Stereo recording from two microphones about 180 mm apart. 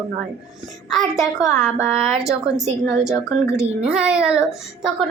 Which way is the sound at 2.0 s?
Centre (ahead or behind).